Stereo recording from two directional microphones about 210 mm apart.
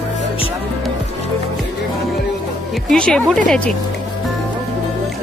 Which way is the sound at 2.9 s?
5° left (ahead or behind).